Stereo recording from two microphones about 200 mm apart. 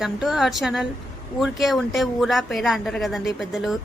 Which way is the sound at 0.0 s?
Centre (ahead or behind).